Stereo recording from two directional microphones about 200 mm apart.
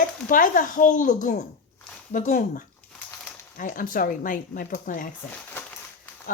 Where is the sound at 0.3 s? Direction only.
40° left (ahead or behind).